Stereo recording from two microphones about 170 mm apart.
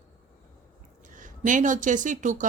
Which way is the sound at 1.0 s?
50° right (ahead or behind).